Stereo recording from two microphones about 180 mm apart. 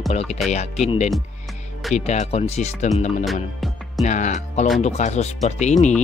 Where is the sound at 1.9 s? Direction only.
40° left (ahead or behind).